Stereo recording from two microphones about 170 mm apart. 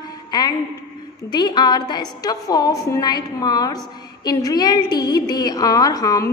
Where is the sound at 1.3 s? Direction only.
25° left (ahead or behind).